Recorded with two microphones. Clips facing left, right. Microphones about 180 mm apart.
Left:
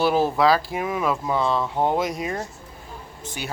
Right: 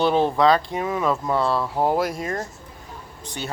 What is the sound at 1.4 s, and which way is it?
Speech, 5° right (ahead or behind).